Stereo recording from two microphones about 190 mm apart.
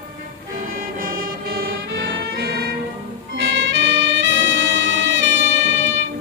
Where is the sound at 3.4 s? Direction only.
80° right.